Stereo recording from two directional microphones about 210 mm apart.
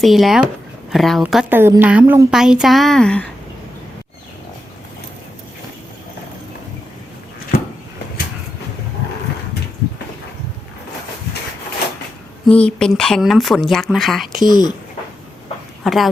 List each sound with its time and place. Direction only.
0.0 s a woman's voice: centre (ahead or behind)
12.5 s a woman's voice: 5° left (ahead or behind)
14.4 s speech: 20° left (ahead or behind)
15.8 s speech: centre (ahead or behind)